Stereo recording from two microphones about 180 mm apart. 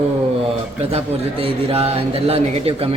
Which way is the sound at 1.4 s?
30° right (ahead or behind).